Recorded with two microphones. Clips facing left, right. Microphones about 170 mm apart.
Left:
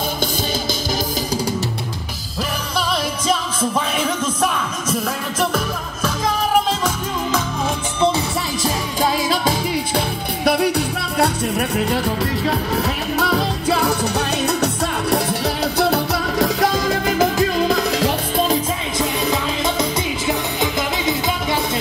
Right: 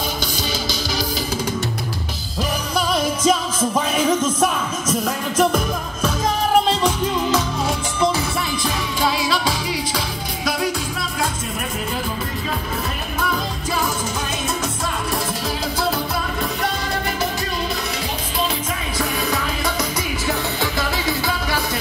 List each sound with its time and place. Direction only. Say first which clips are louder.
8.6 s music: left 3 dB; 45° left (ahead or behind); by 11.2 s 65° left (ahead or behind)
12.4 s music: left 5 dB; 70° left (ahead or behind); by 18.1 s 90° left
18.9 s music: left 2 dB; 20° left (ahead or behind)